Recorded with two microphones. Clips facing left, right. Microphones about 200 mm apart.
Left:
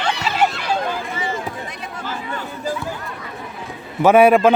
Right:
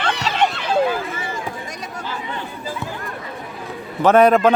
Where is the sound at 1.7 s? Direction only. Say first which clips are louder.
Right 1 dB; 40° right (ahead or behind).